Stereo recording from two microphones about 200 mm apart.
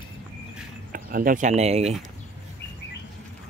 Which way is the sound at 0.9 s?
45° right (ahead or behind).